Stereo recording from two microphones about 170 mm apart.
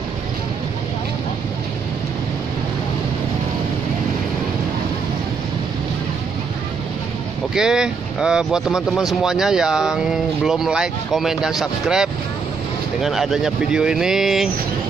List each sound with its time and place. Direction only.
7.5 s speech: 5° right (ahead or behind)